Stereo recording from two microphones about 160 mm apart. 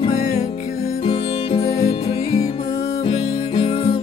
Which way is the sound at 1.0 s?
40° left (ahead or behind).